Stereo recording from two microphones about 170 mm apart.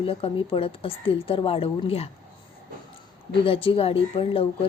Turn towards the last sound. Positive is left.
turn(degrees=35)  # may be behind; listen again after turning